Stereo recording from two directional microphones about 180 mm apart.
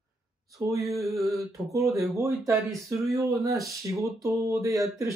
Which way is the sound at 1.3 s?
15° right (ahead or behind).